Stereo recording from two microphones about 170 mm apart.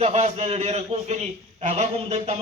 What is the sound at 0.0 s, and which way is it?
A man's voice, 40° right (ahead or behind).